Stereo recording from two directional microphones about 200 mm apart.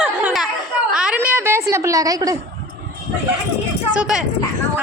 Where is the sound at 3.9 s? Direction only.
5° right (ahead or behind).